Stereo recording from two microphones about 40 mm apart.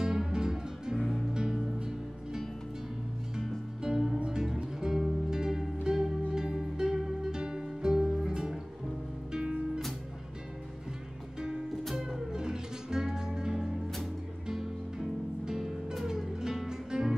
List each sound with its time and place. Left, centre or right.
0.0 s music: centre
0.9 s music: centre
1.3 s music: centre
3.8 s music: centre
9.3 s music: right
11.3 s music: centre
15.4 s music: centre